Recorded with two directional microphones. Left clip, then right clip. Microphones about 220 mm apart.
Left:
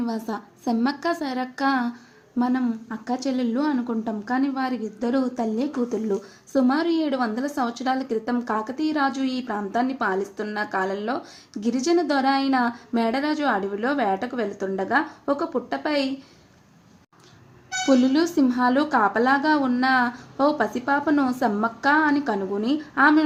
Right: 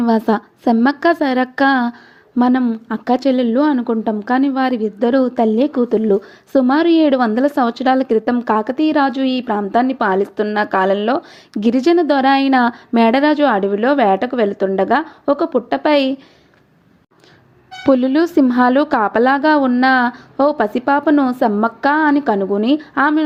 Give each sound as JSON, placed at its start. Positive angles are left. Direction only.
{"t": 0.0, "sound": "a woman's voice", "side_deg": -35}
{"t": 17.8, "sound": "speech", "side_deg": -35}